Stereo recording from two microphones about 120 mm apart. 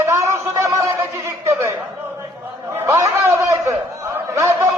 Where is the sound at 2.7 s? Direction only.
20° right (ahead or behind).